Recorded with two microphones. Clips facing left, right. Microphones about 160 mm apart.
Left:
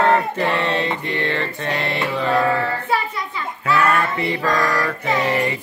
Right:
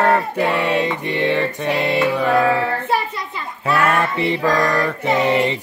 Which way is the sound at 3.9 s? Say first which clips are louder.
Right 2 dB; 20° right (ahead or behind).